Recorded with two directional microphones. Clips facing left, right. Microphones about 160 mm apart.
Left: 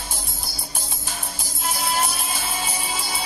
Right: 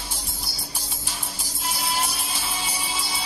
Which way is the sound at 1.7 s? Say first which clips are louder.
Left 3 dB; 55° left (ahead or behind).